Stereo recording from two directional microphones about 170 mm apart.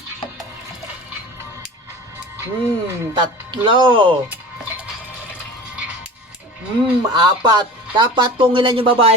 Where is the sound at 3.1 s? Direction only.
25° right (ahead or behind).